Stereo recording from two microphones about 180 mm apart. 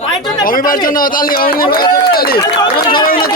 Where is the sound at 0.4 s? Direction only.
50° left (ahead or behind).